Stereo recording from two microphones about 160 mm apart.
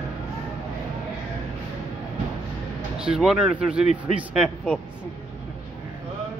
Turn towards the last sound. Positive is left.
turn(degrees=-5)  # may be behind; listen again after turning